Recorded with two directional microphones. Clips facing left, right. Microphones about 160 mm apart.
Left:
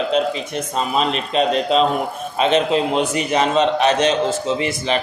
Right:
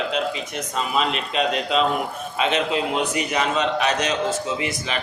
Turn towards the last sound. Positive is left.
turn(degrees=30)  # may be behind; listen again after turning